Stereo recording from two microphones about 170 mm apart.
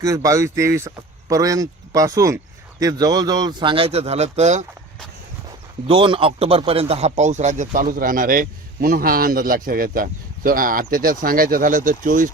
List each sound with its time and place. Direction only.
0.0 s speech: 20° right (ahead or behind); by 4.6 s 40° right (ahead or behind)
5.9 s speech: 30° right (ahead or behind); by 12.3 s 50° right (ahead or behind)